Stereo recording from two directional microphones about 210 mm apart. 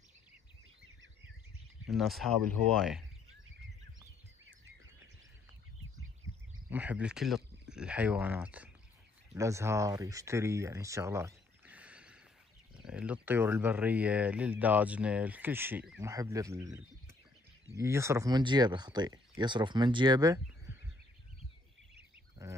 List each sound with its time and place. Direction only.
1.9 s speech: centre (ahead or behind)
6.7 s speech: 5° right (ahead or behind)
22.4 s a sound: 15° right (ahead or behind)